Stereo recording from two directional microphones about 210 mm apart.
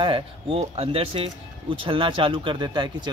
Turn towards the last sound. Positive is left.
turn(degrees=-20)  # may be behind; listen again after turning